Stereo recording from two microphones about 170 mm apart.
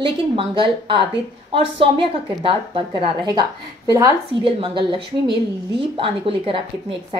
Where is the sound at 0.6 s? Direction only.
30° right (ahead or behind).